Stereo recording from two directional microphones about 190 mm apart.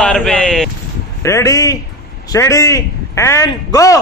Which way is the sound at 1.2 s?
15° left (ahead or behind).